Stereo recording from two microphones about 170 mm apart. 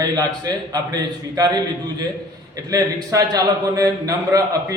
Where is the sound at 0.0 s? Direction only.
20° right (ahead or behind).